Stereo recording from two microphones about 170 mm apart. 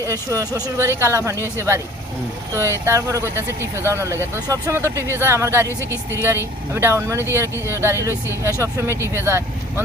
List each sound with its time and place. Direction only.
0.0 s speech: 15° right (ahead or behind)
8.1 s speech: 15° left (ahead or behind)
8.9 s speech: 15° right (ahead or behind)